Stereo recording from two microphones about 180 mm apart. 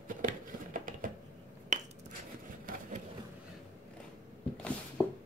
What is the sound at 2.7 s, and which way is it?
Vehicle, 45° right (ahead or behind).